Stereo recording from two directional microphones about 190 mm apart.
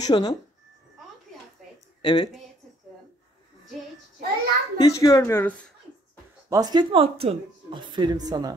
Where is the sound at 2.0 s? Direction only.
25° left (ahead or behind).